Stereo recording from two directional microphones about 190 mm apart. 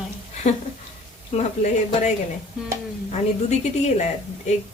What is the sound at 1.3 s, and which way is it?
A woman's voice, 40° left (ahead or behind).